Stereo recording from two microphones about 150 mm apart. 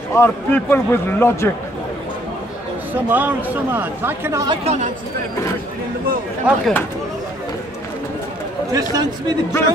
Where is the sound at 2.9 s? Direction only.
10° right (ahead or behind).